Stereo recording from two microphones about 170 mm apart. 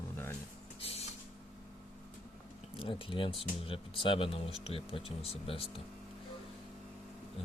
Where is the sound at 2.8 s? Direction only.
30° left (ahead or behind).